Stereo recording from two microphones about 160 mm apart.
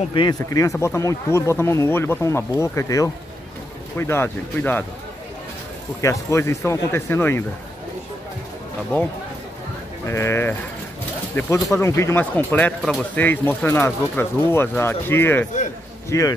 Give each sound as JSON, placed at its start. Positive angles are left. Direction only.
{"t": 0.1, "sound": "speech", "side_deg": 30}
{"t": 5.9, "sound": "speech", "side_deg": 20}
{"t": 10.0, "sound": "speech", "side_deg": 15}
{"t": 11.7, "sound": "a man's voice", "side_deg": 15}